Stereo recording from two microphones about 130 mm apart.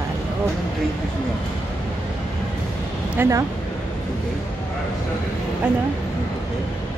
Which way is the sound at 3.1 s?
25° right (ahead or behind).